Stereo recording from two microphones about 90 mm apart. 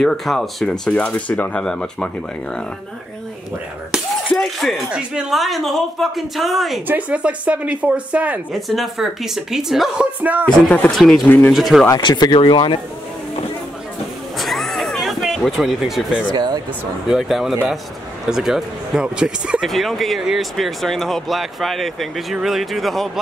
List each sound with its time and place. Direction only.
0.0 s speech: centre (ahead or behind)
4.3 s speech: 5° left (ahead or behind)
4.9 s speech: 10° right (ahead or behind)
6.9 s speech: 15° right (ahead or behind)
8.5 s speech: centre (ahead or behind)
10.4 s speech: 10° left (ahead or behind)
11.2 s speech: 20° left (ahead or behind)
11.5 s speech: centre (ahead or behind)
12.0 s speech: 55° left (ahead or behind)
14.4 s a sound: centre (ahead or behind)
16.3 s speech: 50° right (ahead or behind)
17.1 s speech: 5° right (ahead or behind)
19.6 s speech: centre (ahead or behind)